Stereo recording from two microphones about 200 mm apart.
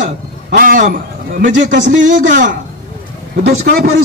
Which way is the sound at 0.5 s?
40° right (ahead or behind).